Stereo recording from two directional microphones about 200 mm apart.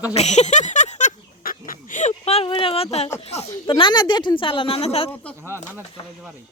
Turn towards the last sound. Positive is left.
turn(degrees=30)  # may be behind; listen again after turning